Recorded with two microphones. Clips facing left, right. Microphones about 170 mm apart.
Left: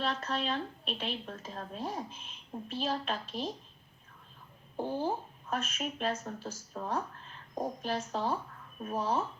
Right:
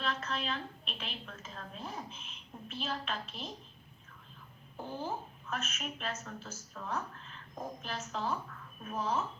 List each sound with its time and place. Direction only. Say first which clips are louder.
0.0 s speech: left 3 dB; 30° left (ahead or behind)
4.8 s speech: left 6 dB; 30° left (ahead or behind)